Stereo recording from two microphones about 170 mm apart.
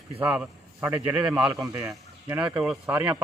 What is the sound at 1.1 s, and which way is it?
Speech, 25° right (ahead or behind).